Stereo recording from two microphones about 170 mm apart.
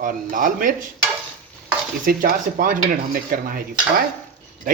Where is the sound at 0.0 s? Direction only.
55° right (ahead or behind).